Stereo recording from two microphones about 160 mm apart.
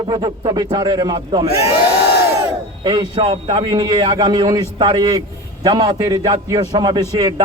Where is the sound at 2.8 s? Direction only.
25° right (ahead or behind).